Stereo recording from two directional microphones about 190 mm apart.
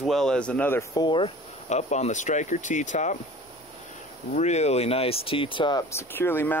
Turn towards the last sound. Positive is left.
turn(degrees=10)  # may be behind; listen again after turning